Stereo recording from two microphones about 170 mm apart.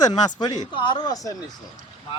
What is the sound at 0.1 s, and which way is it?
Speech, 25° left (ahead or behind).